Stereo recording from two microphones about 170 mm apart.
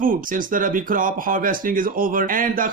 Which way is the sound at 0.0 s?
55° right (ahead or behind).